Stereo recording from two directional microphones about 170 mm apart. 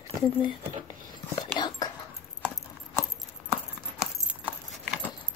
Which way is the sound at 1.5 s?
25° left (ahead or behind).